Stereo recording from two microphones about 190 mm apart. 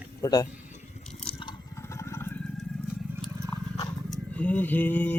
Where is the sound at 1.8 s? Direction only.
15° left (ahead or behind).